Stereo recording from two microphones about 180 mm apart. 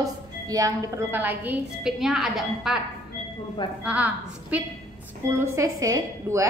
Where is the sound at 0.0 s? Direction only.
20° right (ahead or behind); by 2.8 s centre (ahead or behind).